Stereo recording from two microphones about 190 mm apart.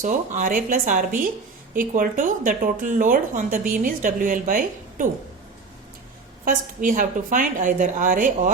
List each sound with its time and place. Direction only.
0.0 s speech: 45° right (ahead or behind)
6.4 s speech: 45° right (ahead or behind)